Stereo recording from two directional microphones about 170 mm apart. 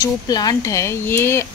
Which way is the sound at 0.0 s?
20° left (ahead or behind).